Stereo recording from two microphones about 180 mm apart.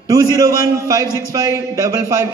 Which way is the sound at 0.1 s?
20° right (ahead or behind).